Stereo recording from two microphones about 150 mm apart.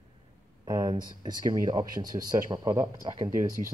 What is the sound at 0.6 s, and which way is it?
Speech, 25° right (ahead or behind).